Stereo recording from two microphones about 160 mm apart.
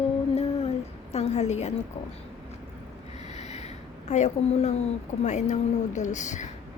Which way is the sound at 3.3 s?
45° left (ahead or behind).